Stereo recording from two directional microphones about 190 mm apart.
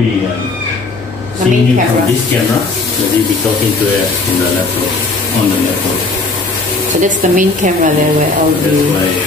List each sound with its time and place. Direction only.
7.0 s a woman's voice: 40° right (ahead or behind)